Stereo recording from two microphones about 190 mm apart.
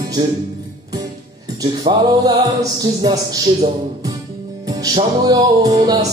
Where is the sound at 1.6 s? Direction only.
20° right (ahead or behind).